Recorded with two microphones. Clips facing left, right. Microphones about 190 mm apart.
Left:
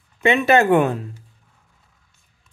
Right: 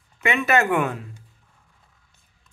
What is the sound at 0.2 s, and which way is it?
Speech, 30° left (ahead or behind).